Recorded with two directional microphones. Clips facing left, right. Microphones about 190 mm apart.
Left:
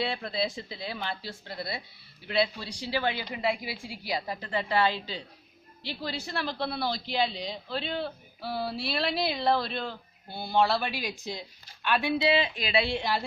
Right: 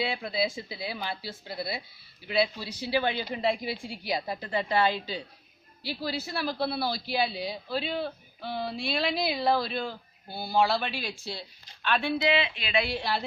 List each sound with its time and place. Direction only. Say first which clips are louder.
0.0 s a man's voice: right 1 dB; 5° right (ahead or behind); by 12.1 s 10° left (ahead or behind)
12.2 s speech: left 1 dB; 40° left (ahead or behind); by 13.2 s 20° left (ahead or behind)